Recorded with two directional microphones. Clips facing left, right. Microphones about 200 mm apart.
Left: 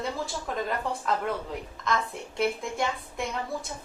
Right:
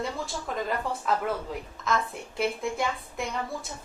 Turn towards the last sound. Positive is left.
turn(degrees=0)  # may be behind; listen again after turning